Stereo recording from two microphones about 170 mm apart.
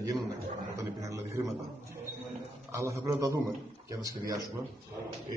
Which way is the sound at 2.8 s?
20° right (ahead or behind).